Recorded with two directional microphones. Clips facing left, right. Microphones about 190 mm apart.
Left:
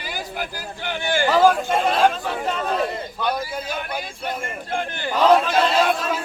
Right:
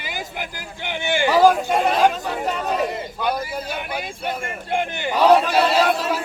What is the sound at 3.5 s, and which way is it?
A man's voice, 10° right (ahead or behind).